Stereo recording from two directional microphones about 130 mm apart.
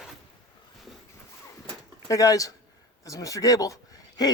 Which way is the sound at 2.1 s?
25° left (ahead or behind).